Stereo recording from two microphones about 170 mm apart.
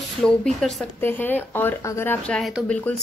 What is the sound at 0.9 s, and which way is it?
Speech, 10° left (ahead or behind).